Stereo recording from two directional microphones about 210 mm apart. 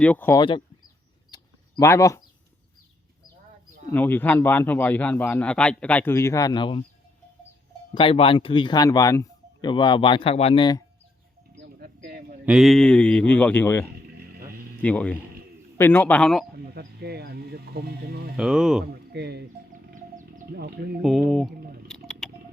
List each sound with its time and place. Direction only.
0.0 s a man's voice: 10° left (ahead or behind)
1.3 s a sound: 15° left (ahead or behind)
3.9 s a man's voice: 10° left (ahead or behind)
7.9 s speech: 25° left (ahead or behind)
11.5 s a sound: 45° right (ahead or behind)
12.5 s a man's voice: centre (ahead or behind)
16.6 s speech: 50° right (ahead or behind)
18.3 s speech: 5° right (ahead or behind)
19.1 s speech: 50° right (ahead or behind)
19.9 s music: 40° right (ahead or behind)
21.0 s speech: centre (ahead or behind)
21.8 s a sound: 5° left (ahead or behind)